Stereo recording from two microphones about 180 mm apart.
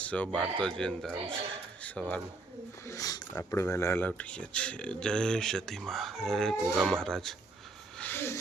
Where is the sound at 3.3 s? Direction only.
15° left (ahead or behind).